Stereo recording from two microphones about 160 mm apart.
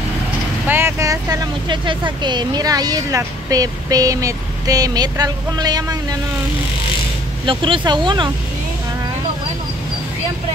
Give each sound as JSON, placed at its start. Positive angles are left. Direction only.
{"t": 0.7, "sound": "speech", "side_deg": -15}
{"t": 7.4, "sound": "speech", "side_deg": -30}